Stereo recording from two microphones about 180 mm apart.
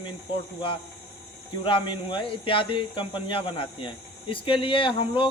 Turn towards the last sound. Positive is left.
turn(degrees=30)  # may be behind; listen again after turning